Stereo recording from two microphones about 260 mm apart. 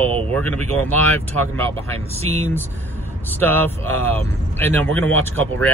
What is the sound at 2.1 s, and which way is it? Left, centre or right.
Speech, right.